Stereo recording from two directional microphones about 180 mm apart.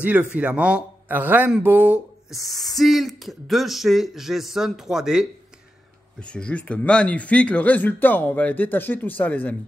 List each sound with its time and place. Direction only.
0.0 s a man's voice: 10° right (ahead or behind)
6.2 s speech: 5° left (ahead or behind)